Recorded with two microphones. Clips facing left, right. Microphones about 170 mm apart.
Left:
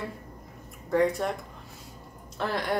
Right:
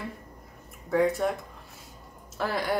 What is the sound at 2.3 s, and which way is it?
Speech, centre (ahead or behind).